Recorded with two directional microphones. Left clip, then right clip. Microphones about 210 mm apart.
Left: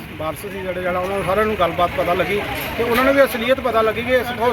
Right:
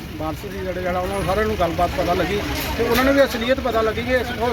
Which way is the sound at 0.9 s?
10° left (ahead or behind).